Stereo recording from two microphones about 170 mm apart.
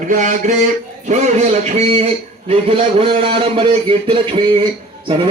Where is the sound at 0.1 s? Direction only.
50° right (ahead or behind).